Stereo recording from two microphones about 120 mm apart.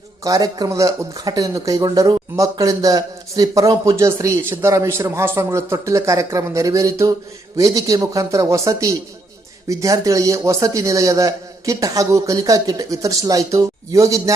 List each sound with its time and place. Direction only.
0.3 s speech: 30° right (ahead or behind)